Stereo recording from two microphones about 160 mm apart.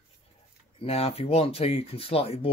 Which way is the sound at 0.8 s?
35° left (ahead or behind).